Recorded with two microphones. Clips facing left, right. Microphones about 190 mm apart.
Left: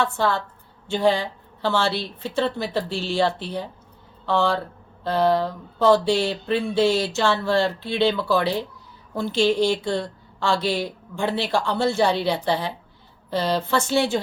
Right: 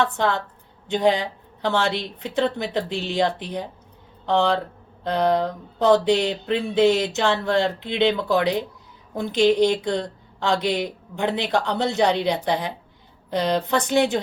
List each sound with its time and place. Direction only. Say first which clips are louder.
0.0 s a woman's voice: right 1 dB; 20° right (ahead or behind)